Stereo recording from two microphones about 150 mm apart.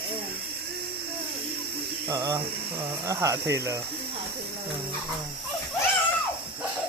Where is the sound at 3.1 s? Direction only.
20° right (ahead or behind).